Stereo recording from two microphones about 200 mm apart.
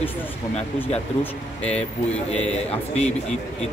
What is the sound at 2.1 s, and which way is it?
A man's voice, 35° left (ahead or behind).